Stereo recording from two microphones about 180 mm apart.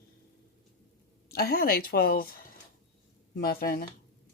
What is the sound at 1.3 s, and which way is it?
Speech, 60° left (ahead or behind).